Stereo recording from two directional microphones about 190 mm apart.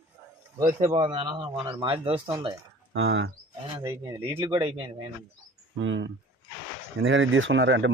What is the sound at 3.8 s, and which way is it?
Speech, 15° right (ahead or behind).